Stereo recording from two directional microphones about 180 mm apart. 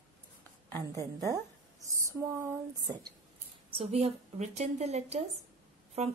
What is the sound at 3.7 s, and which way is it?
A woman's voice, 35° right (ahead or behind).